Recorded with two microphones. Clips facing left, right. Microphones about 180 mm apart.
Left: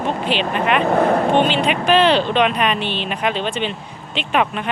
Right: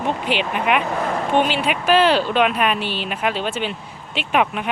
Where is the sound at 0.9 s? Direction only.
55° left (ahead or behind).